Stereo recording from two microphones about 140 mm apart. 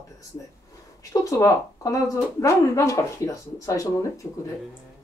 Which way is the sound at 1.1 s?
25° left (ahead or behind).